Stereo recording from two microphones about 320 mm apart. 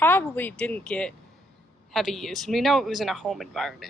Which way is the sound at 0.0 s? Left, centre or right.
Centre.